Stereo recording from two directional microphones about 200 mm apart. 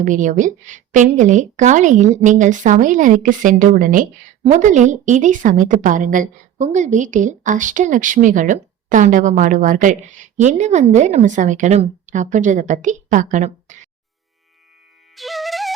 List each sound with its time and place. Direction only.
0.0 s speech: 40° right (ahead or behind)
15.1 s music: centre (ahead or behind)